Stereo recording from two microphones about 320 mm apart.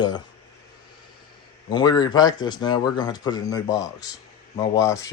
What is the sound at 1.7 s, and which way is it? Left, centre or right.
Speech, centre.